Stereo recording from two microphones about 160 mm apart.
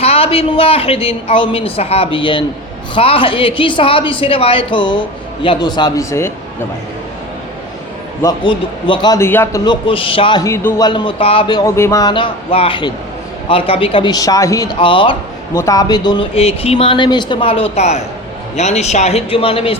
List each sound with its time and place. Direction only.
0.0 s a woman's voice: 40° left (ahead or behind); by 6.3 s 20° left (ahead or behind)
8.2 s a man's voice: 25° left (ahead or behind)
9.1 s speech: 15° left (ahead or behind)
9.6 s a woman's voice: 35° left (ahead or behind)
10.4 s speech: 15° left (ahead or behind)
10.8 s a man's voice: 30° left (ahead or behind)
15.5 s a woman's voice: 20° left (ahead or behind); by 19.7 s 35° left (ahead or behind)